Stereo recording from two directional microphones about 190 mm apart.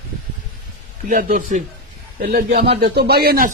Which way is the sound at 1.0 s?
45° right (ahead or behind).